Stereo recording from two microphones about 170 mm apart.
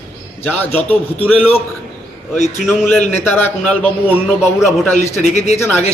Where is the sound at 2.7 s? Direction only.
10° left (ahead or behind).